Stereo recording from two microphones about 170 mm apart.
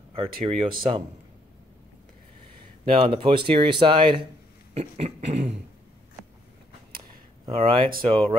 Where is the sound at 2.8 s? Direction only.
35° right (ahead or behind).